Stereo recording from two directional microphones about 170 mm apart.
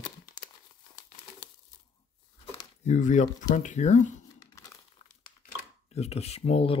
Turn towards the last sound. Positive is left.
turn(degrees=35)  # may be behind; listen again after turning